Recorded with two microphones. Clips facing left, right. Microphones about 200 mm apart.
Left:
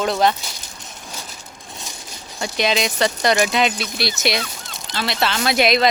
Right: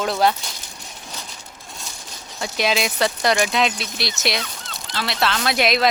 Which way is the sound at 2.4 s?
Centre (ahead or behind).